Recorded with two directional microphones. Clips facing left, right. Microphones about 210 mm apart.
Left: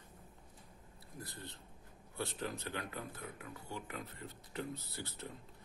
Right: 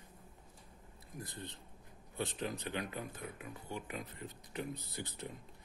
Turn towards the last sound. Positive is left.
turn(degrees=-15)  # may be behind; listen again after turning